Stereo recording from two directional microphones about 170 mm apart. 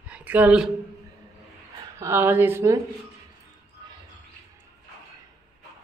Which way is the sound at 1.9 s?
15° right (ahead or behind).